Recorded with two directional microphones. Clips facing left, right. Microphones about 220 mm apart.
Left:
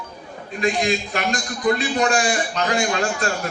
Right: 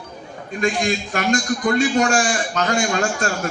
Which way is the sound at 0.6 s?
50° right (ahead or behind).